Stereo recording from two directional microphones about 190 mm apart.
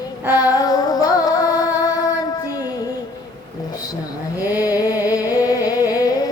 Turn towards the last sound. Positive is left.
turn(degrees=20)  # may be behind; listen again after turning